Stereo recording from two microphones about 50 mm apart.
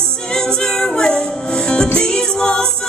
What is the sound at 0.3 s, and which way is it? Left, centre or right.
Music, centre.